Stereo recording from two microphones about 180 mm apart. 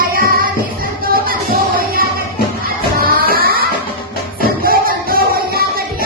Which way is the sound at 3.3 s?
55° right (ahead or behind).